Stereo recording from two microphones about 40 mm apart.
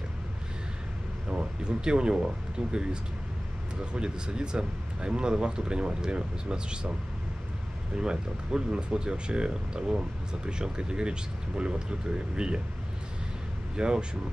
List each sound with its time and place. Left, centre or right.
1.3 s speech: right
8.0 s speech: right
13.7 s speech: right